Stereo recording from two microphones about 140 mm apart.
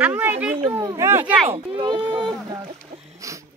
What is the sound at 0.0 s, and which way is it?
Speech, 15° right (ahead or behind).